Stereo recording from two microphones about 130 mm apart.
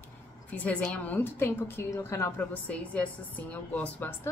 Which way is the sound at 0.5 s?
10° left (ahead or behind).